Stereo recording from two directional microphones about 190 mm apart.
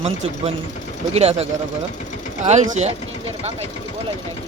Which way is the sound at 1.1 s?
35° right (ahead or behind).